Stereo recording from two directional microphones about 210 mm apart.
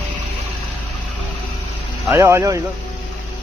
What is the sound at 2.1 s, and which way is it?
Speech, 15° right (ahead or behind).